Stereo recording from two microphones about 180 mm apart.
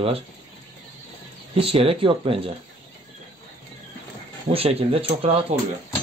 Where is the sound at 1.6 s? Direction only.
30° right (ahead or behind).